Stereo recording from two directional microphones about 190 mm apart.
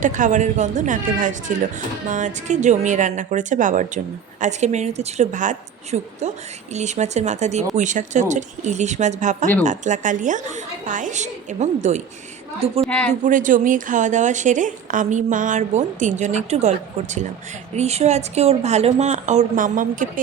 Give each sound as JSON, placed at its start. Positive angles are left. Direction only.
{"t": 0.0, "sound": "a woman's voice", "side_deg": -40}
{"t": 13.1, "sound": "a woman's voice", "side_deg": -40}